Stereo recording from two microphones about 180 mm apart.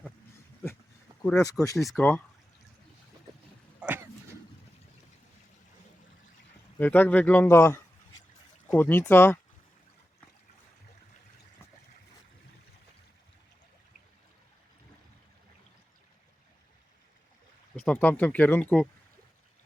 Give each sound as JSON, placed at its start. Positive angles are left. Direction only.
{"t": 1.4, "sound": "speech", "side_deg": 20}
{"t": 3.8, "sound": "throat clearing", "side_deg": -10}
{"t": 6.7, "sound": "speech", "side_deg": 10}
{"t": 17.8, "sound": "speech", "side_deg": 10}